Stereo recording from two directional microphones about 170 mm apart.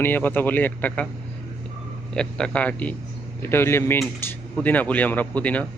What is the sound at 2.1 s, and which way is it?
Speech, 5° left (ahead or behind).